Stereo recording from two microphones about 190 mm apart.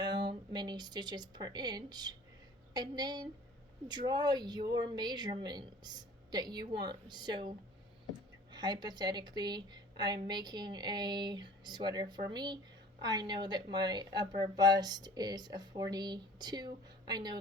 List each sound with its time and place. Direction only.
0.1 s a sound: 65° right (ahead or behind)
0.5 s a woman's voice: 20° right (ahead or behind)
8.5 s speech: 20° right (ahead or behind)